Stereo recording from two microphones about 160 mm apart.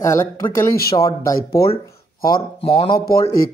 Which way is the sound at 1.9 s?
25° left (ahead or behind).